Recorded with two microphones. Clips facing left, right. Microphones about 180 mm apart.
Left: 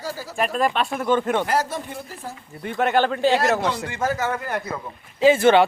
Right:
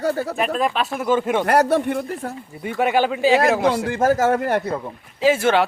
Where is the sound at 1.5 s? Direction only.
65° right (ahead or behind).